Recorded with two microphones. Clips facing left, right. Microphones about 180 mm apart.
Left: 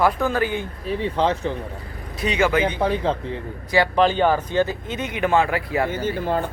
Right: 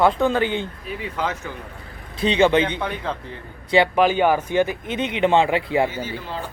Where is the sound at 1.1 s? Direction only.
30° left (ahead or behind).